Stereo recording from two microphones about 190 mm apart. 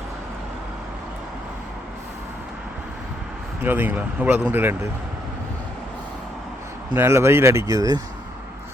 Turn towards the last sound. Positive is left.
turn(degrees=-20)  # may be behind; listen again after turning